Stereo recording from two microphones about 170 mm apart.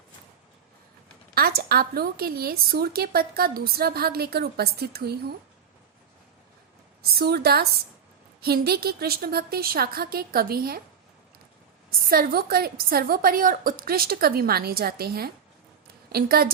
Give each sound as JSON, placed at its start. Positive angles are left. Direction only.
{"t": 1.4, "sound": "a woman's voice", "side_deg": -65}
{"t": 7.0, "sound": "a woman's voice", "side_deg": -65}
{"t": 11.9, "sound": "a woman's voice", "side_deg": -60}